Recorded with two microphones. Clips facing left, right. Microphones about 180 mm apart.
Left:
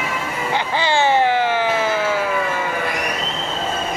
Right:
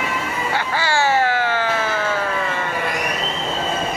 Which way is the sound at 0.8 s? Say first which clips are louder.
Left 2 dB; 20° left (ahead or behind).